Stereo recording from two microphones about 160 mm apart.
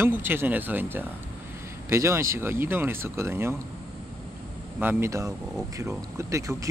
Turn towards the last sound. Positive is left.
turn(degrees=-20)  # may be behind; listen again after turning